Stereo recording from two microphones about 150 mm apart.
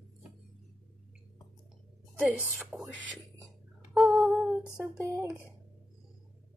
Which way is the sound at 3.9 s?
5° right (ahead or behind).